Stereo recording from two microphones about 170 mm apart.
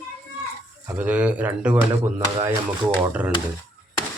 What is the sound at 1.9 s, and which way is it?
Speech, 25° right (ahead or behind).